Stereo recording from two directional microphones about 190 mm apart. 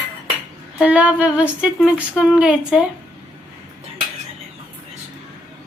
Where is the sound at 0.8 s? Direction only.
5° right (ahead or behind).